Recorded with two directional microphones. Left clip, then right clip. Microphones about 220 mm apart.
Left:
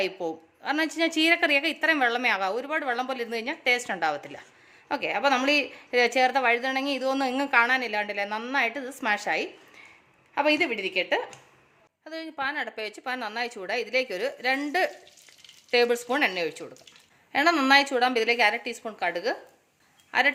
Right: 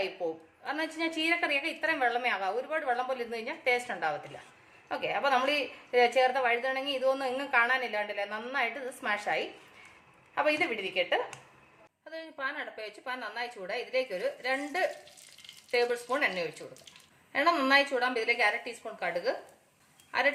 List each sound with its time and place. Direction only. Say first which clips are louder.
0.6 s a woman's voice: left 7 dB; 50° left (ahead or behind)